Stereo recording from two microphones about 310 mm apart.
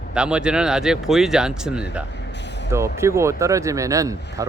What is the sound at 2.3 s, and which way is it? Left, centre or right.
Vehicle, left.